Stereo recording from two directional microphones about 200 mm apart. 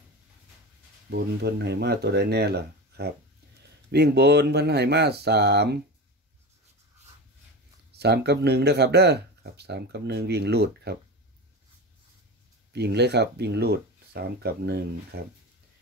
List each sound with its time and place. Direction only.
1.1 s speech: 55° right (ahead or behind)
8.0 s speech: 55° right (ahead or behind)
12.7 s speech: 55° right (ahead or behind)